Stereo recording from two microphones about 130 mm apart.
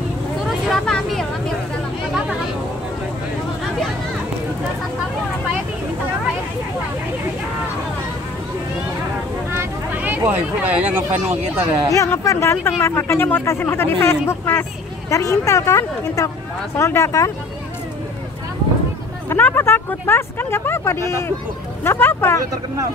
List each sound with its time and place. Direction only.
0.5 s vehicle: 5° left (ahead or behind)
9.5 s speech: 15° right (ahead or behind)
11.9 s speech: 25° left (ahead or behind)
19.2 s speech: 15° left (ahead or behind)